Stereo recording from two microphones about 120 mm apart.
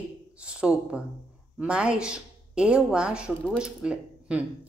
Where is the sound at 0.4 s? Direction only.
10° right (ahead or behind).